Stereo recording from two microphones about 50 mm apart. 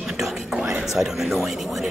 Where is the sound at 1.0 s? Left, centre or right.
Centre.